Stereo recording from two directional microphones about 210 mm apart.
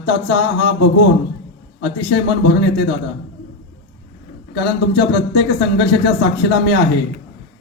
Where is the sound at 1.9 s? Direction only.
55° left (ahead or behind).